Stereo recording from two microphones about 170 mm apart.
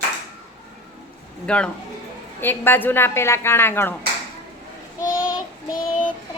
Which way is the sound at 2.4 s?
10° left (ahead or behind).